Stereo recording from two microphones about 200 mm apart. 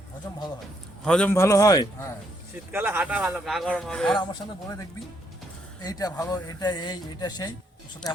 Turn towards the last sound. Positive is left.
turn(degrees=20)  # may be behind; listen again after turning